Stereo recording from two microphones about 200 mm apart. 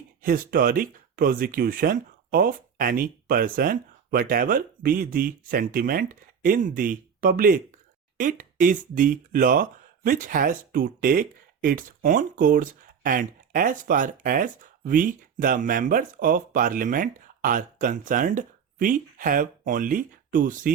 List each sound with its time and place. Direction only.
0.2 s speech: 45° right (ahead or behind)